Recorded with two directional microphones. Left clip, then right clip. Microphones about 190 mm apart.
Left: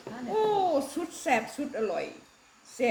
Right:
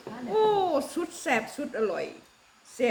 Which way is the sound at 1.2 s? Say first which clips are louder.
Left 1 dB; 15° right (ahead or behind).